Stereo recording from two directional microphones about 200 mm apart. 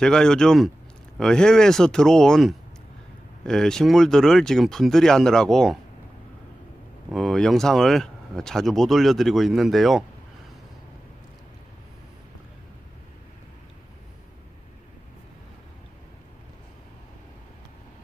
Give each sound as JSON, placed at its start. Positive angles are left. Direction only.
{"t": 0.0, "sound": "speech", "side_deg": 5}
{"t": 7.1, "sound": "speech", "side_deg": 0}